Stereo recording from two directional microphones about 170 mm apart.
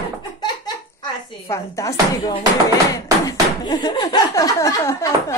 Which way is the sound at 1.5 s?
20° left (ahead or behind).